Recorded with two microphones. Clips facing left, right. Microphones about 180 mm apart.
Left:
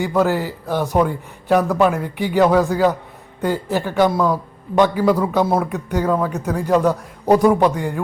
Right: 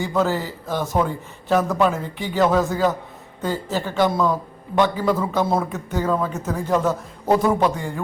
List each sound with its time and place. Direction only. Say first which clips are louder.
0.0 s a man's voice: left 3 dB; 15° left (ahead or behind)